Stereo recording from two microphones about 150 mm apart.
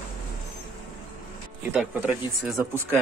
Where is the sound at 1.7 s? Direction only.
5° right (ahead or behind).